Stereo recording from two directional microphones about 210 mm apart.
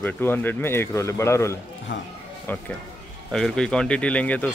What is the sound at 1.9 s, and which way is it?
Speech, 60° left (ahead or behind).